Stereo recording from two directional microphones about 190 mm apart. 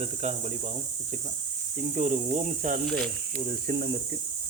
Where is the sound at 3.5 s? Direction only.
55° right (ahead or behind).